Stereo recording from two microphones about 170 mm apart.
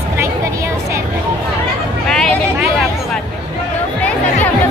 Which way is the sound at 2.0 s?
5° left (ahead or behind).